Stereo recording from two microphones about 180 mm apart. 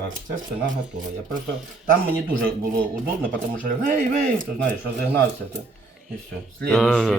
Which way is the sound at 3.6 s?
50° right (ahead or behind).